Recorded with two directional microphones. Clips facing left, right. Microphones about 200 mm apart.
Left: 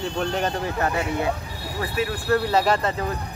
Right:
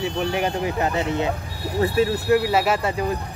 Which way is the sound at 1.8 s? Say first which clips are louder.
Right 7 dB; 30° right (ahead or behind).